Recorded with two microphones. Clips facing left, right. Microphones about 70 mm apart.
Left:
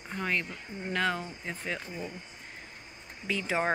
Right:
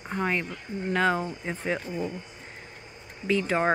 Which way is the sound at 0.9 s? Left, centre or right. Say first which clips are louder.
Right 6 dB; centre.